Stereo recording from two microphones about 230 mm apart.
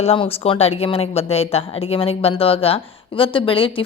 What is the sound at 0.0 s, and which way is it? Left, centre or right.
A woman's voice, left.